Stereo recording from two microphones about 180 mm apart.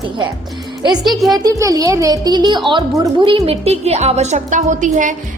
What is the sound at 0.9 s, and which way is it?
Speech, centre (ahead or behind).